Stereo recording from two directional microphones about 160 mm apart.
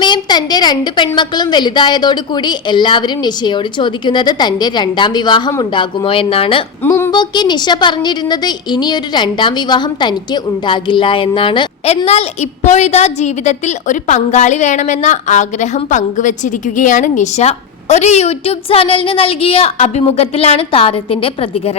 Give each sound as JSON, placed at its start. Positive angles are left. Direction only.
{"t": 0.0, "sound": "a woman's voice", "side_deg": 30}
{"t": 6.8, "sound": "a sound", "side_deg": 15}
{"t": 7.1, "sound": "a woman's voice", "side_deg": 25}
{"t": 12.0, "sound": "a woman's voice", "side_deg": 40}